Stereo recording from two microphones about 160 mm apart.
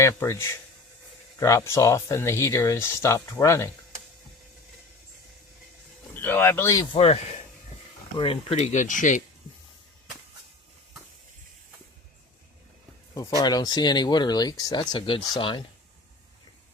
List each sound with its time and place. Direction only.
0.0 s speech: 20° left (ahead or behind)
6.2 s speech: 15° left (ahead or behind)
6.9 s speech: 35° left (ahead or behind)
8.2 s speech: 35° left (ahead or behind); by 9.2 s 50° left (ahead or behind)
13.1 s speech: 20° left (ahead or behind)